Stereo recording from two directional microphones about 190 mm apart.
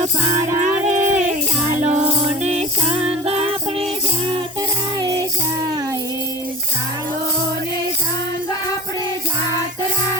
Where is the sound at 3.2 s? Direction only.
30° right (ahead or behind).